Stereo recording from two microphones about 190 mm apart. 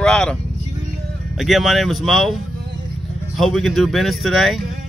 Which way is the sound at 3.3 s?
Centre (ahead or behind).